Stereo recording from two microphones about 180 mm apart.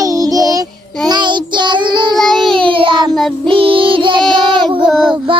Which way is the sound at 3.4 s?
30° right (ahead or behind).